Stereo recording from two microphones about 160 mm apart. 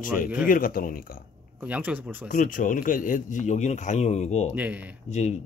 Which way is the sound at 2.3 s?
55° left (ahead or behind).